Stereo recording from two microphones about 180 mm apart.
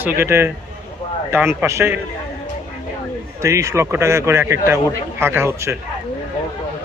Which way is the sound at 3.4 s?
15° right (ahead or behind).